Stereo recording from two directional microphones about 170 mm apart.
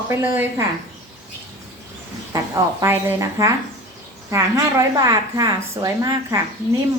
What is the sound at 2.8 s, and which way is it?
Speech, 15° right (ahead or behind).